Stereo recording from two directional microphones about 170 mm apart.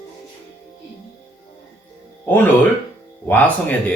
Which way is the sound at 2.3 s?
10° left (ahead or behind).